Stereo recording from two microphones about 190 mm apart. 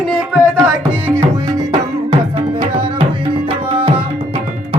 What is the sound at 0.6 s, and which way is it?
Tabla, 10° right (ahead or behind).